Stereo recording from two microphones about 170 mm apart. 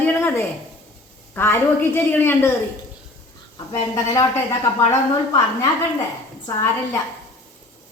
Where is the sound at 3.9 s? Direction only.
20° left (ahead or behind).